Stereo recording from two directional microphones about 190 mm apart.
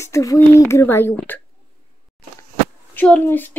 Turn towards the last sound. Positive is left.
turn(degrees=10)  # may be behind; listen again after turning